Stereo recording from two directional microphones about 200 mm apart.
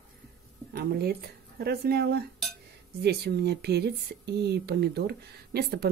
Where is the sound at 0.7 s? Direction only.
55° right (ahead or behind).